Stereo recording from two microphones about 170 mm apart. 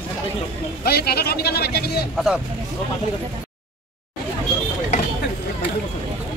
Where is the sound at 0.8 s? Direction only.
65° left (ahead or behind).